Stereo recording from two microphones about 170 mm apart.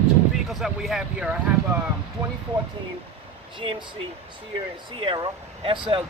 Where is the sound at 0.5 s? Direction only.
Centre (ahead or behind).